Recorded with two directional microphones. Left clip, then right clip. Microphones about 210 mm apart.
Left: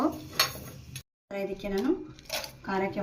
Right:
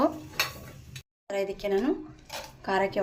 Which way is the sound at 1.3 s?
45° right (ahead or behind).